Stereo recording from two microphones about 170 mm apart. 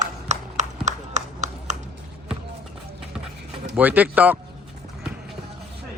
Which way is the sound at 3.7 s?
10° right (ahead or behind).